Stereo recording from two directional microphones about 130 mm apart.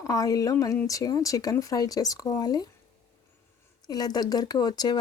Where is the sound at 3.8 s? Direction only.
30° left (ahead or behind).